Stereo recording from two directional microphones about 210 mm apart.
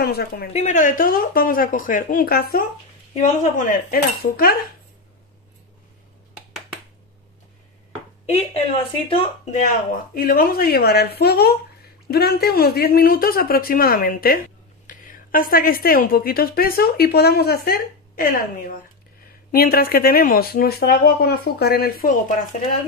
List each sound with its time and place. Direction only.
0.0 s speech: 45° left (ahead or behind)
0.5 s speech: 30° left (ahead or behind)
6.3 s finger snapping: centre (ahead or behind)
8.3 s speech: 30° left (ahead or behind)
10.1 s speech: 45° left (ahead or behind)
19.5 s speech: 45° left (ahead or behind)